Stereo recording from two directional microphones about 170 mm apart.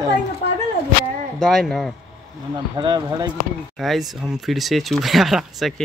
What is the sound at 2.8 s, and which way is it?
Speech, 25° right (ahead or behind).